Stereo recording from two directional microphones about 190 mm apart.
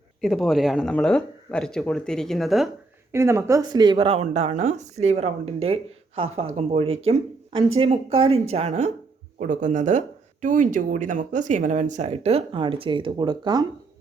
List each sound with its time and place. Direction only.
0.2 s speech: centre (ahead or behind)
3.1 s speech: 15° right (ahead or behind)